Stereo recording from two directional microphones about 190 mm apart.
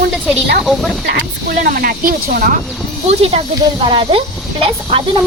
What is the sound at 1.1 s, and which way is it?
Speech, 50° right (ahead or behind).